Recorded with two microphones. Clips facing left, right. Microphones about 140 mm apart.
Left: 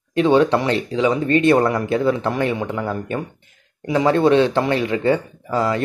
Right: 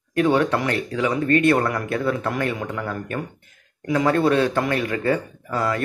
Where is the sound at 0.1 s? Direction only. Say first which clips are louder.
Left 4 dB; 25° left (ahead or behind).